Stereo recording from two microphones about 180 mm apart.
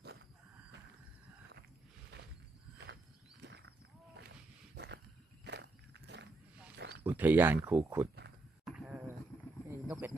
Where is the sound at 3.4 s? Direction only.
70° right (ahead or behind).